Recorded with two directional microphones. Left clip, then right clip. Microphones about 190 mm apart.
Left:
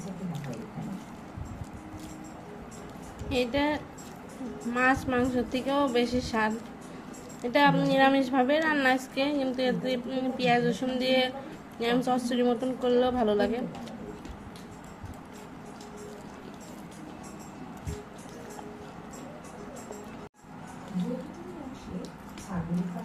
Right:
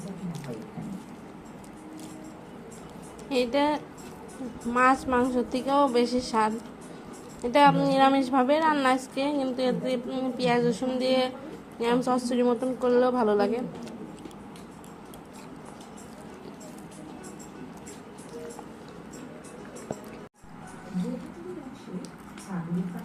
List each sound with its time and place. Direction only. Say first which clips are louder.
3.2 s a woman's voice: right 3 dB; 15° right (ahead or behind)